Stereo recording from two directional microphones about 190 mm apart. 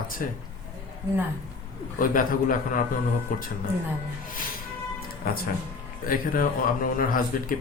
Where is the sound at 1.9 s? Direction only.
45° left (ahead or behind).